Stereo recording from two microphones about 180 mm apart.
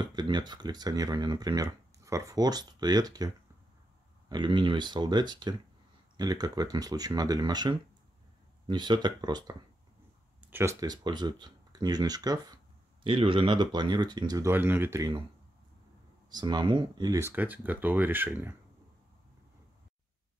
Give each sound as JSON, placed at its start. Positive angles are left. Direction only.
{"t": 0.0, "sound": "speech", "side_deg": -25}
{"t": 4.3, "sound": "speech", "side_deg": -25}
{"t": 16.3, "sound": "speech", "side_deg": -25}